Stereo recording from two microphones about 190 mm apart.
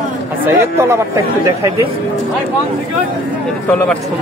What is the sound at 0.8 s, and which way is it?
Speech, 15° right (ahead or behind).